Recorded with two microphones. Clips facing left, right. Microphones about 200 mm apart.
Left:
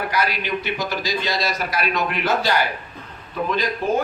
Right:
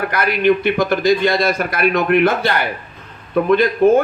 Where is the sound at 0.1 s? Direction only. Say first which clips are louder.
Right 8 dB; 55° right (ahead or behind).